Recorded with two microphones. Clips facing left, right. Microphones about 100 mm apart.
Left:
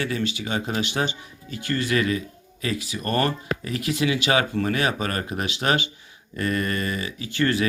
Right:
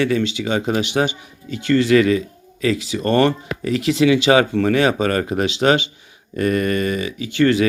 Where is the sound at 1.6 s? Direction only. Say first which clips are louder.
Right 9 dB; 90° right.